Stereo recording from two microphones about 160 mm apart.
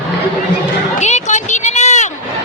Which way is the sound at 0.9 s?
45° left (ahead or behind).